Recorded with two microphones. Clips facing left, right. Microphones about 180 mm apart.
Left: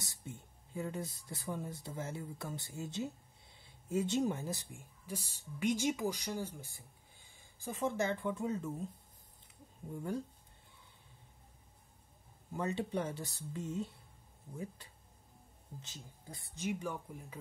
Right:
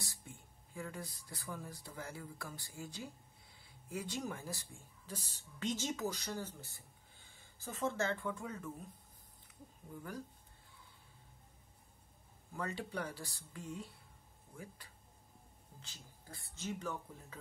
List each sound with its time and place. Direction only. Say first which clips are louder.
0.0 s speech: left 4 dB; 20° left (ahead or behind)
9.8 s speech: left 7 dB; 25° left (ahead or behind)
12.5 s speech: left 5 dB; 20° left (ahead or behind)